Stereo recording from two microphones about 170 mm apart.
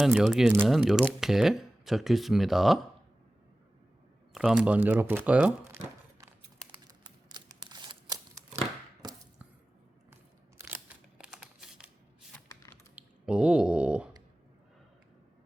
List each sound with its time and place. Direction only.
0.0 s speech: centre (ahead or behind)
4.3 s speech: 5° right (ahead or behind)
7.3 s scissors: 25° right (ahead or behind)
10.6 s camera: 10° right (ahead or behind)
12.5 s a sound: 15° left (ahead or behind)
13.0 s a sound: 5° right (ahead or behind)